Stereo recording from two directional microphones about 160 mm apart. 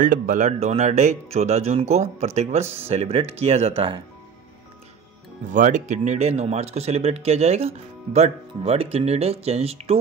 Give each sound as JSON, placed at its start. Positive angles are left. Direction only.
{"t": 0.0, "sound": "speech", "side_deg": -55}
{"t": 5.5, "sound": "speech", "side_deg": -50}